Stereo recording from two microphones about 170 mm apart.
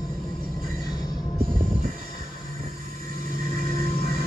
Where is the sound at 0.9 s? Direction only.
25° left (ahead or behind).